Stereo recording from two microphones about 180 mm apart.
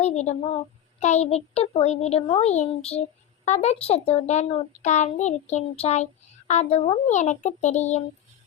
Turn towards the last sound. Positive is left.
turn(degrees=40)  # may be behind; listen again after turning